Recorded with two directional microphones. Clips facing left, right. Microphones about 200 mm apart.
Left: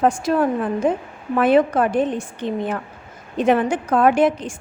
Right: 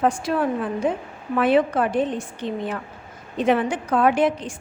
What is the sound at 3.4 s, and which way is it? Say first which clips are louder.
A woman's voice: left 3 dB; 45° left (ahead or behind).